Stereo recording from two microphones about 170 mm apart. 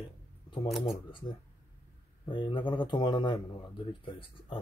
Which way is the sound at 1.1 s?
30° left (ahead or behind).